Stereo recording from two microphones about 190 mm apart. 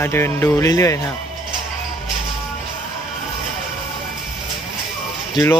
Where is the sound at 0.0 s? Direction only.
10° left (ahead or behind).